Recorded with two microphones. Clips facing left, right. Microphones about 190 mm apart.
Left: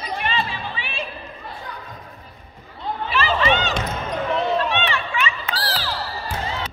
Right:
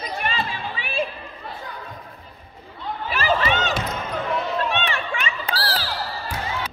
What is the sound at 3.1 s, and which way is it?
Run, 45° right (ahead or behind).